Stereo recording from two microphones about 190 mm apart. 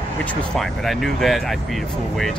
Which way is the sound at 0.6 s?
Centre (ahead or behind).